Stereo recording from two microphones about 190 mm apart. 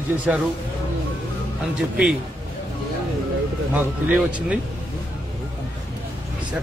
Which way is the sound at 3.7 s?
5° right (ahead or behind).